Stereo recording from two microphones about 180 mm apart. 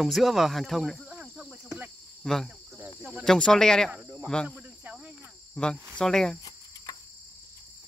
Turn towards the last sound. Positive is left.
turn(degrees=5)  # may be behind; listen again after turning